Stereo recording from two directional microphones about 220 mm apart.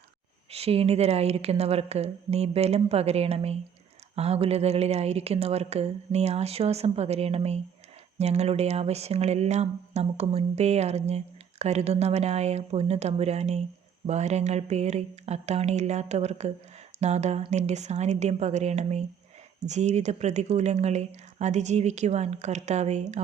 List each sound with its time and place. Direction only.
0.5 s a woman's voice: 25° right (ahead or behind)